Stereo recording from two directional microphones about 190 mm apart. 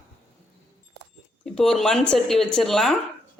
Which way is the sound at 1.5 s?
5° left (ahead or behind).